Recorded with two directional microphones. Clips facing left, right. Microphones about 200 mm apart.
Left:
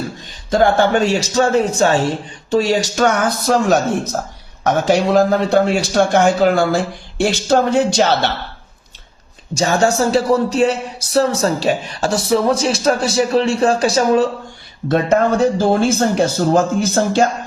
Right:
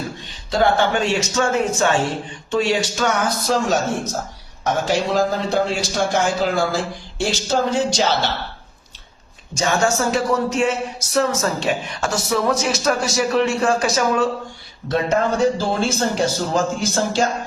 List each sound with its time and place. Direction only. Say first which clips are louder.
0.5 s music: left 4 dB; 45° left (ahead or behind)
2.5 s speech: left 4 dB; 40° left (ahead or behind); by 8.3 s 60° left (ahead or behind)
9.6 s music: left 4 dB; 35° left (ahead or behind)
14.8 s speech: left 5 dB; 55° left (ahead or behind)